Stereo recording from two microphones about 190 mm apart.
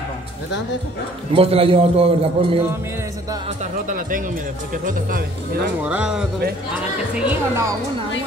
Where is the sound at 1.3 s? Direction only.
30° right (ahead or behind).